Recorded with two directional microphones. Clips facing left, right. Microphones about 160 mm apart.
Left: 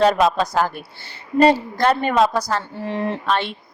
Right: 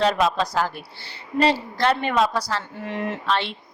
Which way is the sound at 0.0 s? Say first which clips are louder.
Left 4 dB; 45° left (ahead or behind).